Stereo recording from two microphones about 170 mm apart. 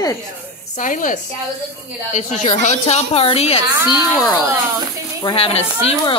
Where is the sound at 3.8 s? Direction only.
20° left (ahead or behind).